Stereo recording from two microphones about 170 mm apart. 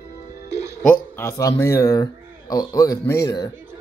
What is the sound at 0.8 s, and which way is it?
Speech, 10° left (ahead or behind).